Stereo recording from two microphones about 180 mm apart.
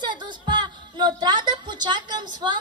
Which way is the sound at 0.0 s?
25° right (ahead or behind).